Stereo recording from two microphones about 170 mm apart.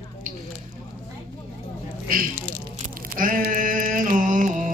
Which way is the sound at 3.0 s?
55° right (ahead or behind).